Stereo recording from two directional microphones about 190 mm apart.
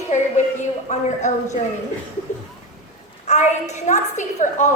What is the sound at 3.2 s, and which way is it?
A woman's voice, 35° left (ahead or behind).